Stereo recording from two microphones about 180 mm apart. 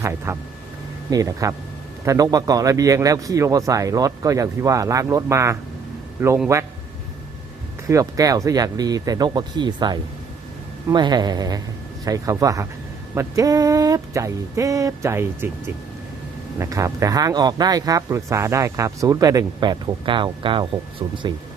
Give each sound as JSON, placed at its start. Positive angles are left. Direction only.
{"t": 0.0, "sound": "speech", "side_deg": -15}
{"t": 7.9, "sound": "speech", "side_deg": -20}